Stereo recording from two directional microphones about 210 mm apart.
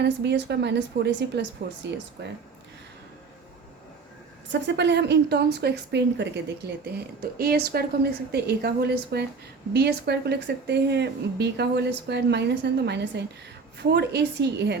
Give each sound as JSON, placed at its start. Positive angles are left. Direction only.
{"t": 0.0, "sound": "a woman's voice", "side_deg": -55}
{"t": 4.5, "sound": "a woman's voice", "side_deg": -55}